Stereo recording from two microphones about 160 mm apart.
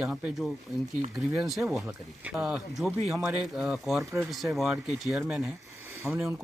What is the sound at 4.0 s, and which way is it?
Speech, 20° right (ahead or behind).